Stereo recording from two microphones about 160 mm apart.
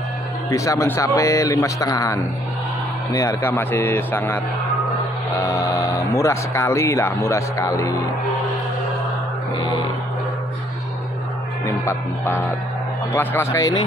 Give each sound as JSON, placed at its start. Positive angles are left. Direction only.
{"t": 0.5, "sound": "a man's voice", "side_deg": 20}
{"t": 5.4, "sound": "speech", "side_deg": 20}
{"t": 11.6, "sound": "music", "side_deg": 20}
{"t": 13.1, "sound": "a man's voice", "side_deg": 15}